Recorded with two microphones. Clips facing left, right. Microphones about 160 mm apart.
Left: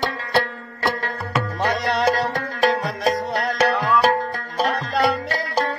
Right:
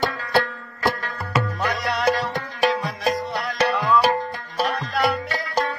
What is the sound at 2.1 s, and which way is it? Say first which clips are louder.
Music: left 3 dB; 40° left (ahead or behind).